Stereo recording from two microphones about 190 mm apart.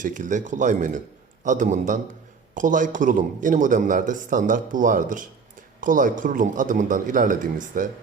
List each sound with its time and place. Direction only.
0.0 s a man's voice: 45° right (ahead or behind)